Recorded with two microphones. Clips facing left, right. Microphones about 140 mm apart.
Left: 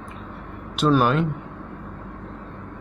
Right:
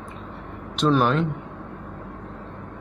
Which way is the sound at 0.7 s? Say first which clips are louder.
Left 1 dB; 5° left (ahead or behind).